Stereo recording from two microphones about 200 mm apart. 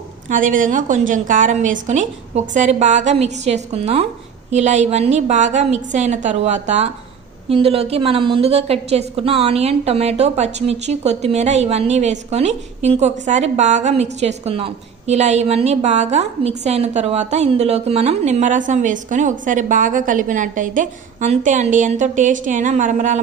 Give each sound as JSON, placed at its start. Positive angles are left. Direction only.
{"t": 0.3, "sound": "a woman's voice", "side_deg": -40}